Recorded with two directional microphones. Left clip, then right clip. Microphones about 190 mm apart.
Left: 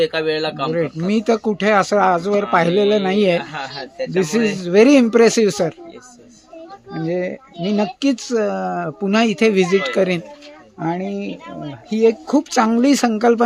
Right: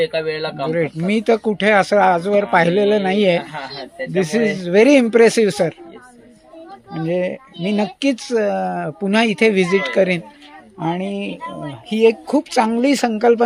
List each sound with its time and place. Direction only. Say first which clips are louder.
0.0 s speech: left 2 dB; 15° left (ahead or behind)
0.7 s speech: right 1 dB; centre (ahead or behind)
3.5 s speech: left 1 dB; 15° left (ahead or behind)
6.9 s speech: right 2 dB; 10° right (ahead or behind)
10.8 s speech: right 1 dB; 5° right (ahead or behind)
12.4 s speech: even; 10° left (ahead or behind)